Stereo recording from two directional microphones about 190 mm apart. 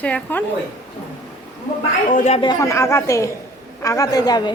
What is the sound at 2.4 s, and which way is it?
A woman's voice, 20° left (ahead or behind).